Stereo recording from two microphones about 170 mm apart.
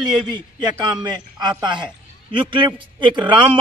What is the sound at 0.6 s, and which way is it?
A man's voice, 20° right (ahead or behind).